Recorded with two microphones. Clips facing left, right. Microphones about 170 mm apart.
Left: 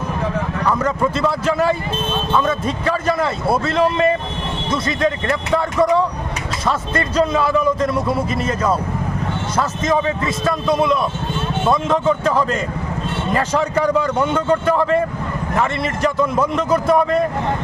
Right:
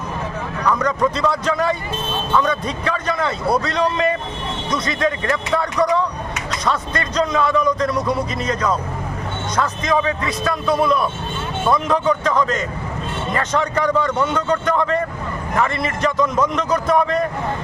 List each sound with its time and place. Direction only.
1.2 s a man's voice: 5° left (ahead or behind)
3.8 s a man's voice: 25° left (ahead or behind)
8.4 s speech: 5° left (ahead or behind)
9.8 s a man's voice: 25° left (ahead or behind)
11.9 s a man's voice: 5° left (ahead or behind)